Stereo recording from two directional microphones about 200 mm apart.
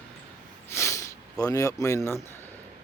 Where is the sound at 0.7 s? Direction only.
15° left (ahead or behind).